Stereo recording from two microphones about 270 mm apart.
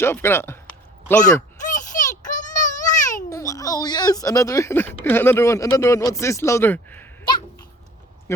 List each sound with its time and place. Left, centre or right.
0.0 s speech: centre
1.6 s a sound: left
3.2 s speech: centre